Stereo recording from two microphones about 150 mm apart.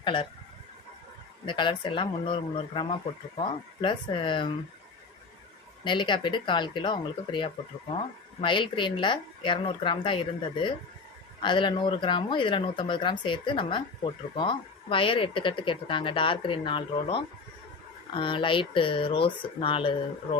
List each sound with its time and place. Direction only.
0.0 s speech: 35° left (ahead or behind)
1.5 s speech: 30° left (ahead or behind)
5.8 s speech: 30° left (ahead or behind)
11.4 s speech: 30° left (ahead or behind)